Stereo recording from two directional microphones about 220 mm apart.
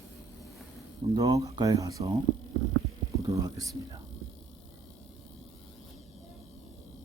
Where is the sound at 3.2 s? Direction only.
15° right (ahead or behind).